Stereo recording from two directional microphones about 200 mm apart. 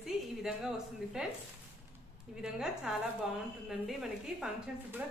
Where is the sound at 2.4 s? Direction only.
Centre (ahead or behind).